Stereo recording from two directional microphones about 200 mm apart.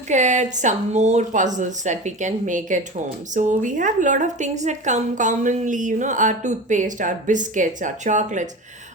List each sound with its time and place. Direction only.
0.1 s a woman's voice: 35° right (ahead or behind)